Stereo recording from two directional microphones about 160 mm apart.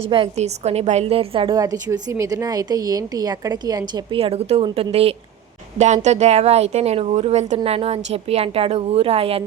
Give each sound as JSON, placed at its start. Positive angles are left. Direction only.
{"t": 0.1, "sound": "a woman's voice", "side_deg": -40}